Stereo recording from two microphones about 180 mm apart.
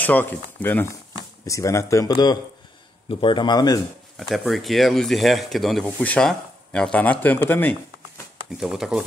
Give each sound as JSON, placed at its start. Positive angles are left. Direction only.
{"t": 0.0, "sound": "a man's voice", "side_deg": 10}
{"t": 4.2, "sound": "speech", "side_deg": 0}
{"t": 8.5, "sound": "speech", "side_deg": -5}